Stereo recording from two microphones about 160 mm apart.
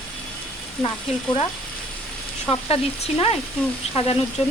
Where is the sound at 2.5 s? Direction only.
35° left (ahead or behind).